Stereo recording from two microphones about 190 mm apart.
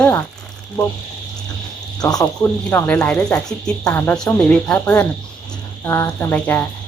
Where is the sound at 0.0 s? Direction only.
15° left (ahead or behind).